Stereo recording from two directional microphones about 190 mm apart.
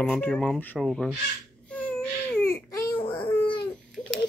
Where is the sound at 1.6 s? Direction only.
5° left (ahead or behind).